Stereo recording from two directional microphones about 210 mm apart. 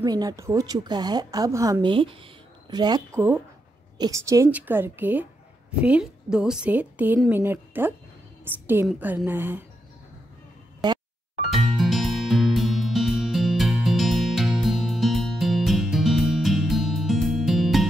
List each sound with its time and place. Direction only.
0.0 s a woman's voice: 20° right (ahead or behind)
11.5 s music: centre (ahead or behind)